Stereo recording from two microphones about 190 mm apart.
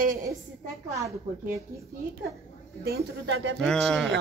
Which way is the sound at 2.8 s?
70° right (ahead or behind).